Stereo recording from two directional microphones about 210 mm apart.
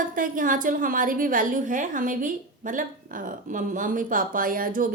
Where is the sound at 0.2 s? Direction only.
40° right (ahead or behind).